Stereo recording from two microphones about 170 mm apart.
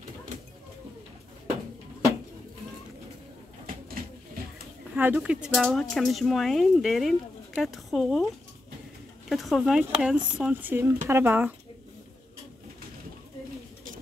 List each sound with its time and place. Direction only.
4.9 s speech: 10° right (ahead or behind)
9.3 s speech: centre (ahead or behind)